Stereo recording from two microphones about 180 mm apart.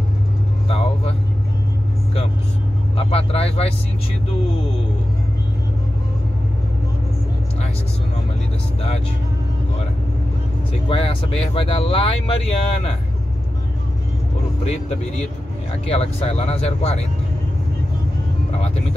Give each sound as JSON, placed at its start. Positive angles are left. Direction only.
{"t": 0.7, "sound": "vehicle", "side_deg": 35}
{"t": 3.0, "sound": "speech", "side_deg": 30}
{"t": 10.7, "sound": "speech", "side_deg": 30}
{"t": 15.9, "sound": "speech", "side_deg": 35}